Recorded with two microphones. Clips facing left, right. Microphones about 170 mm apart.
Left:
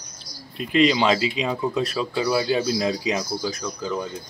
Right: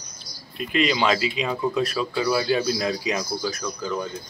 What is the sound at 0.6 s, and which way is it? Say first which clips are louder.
Speech: left 3 dB; 30° left (ahead or behind).